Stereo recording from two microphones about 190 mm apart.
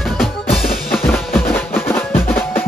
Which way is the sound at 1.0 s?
10° left (ahead or behind).